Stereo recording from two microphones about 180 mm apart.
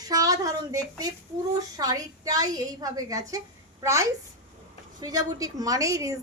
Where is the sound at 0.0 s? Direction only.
20° right (ahead or behind).